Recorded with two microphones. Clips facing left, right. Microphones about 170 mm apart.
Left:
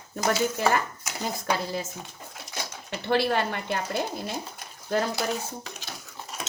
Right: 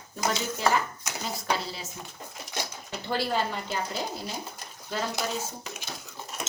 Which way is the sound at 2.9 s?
65° left (ahead or behind).